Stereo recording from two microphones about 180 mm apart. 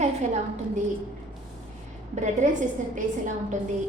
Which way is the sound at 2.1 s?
40° right (ahead or behind).